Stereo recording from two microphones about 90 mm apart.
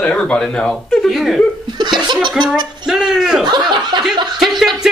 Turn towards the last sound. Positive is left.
turn(degrees=-5)  # may be behind; listen again after turning